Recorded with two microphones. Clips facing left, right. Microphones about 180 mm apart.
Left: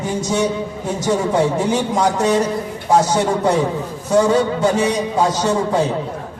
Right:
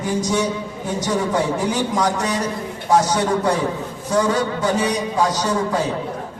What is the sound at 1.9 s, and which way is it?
Music, 25° left (ahead or behind).